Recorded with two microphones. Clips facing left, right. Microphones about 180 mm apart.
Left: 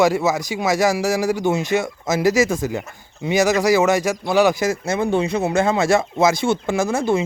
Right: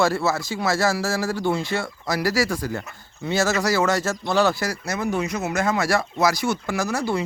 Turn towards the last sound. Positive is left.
turn(degrees=25)  # may be behind; listen again after turning